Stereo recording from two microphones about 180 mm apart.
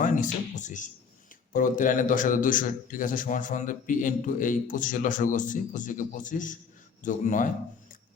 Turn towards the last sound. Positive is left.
turn(degrees=45)  # may be behind; listen again after turning